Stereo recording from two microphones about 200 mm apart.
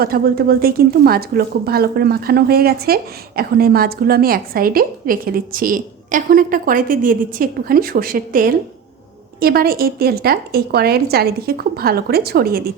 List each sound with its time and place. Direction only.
0.0 s speech: 50° right (ahead or behind)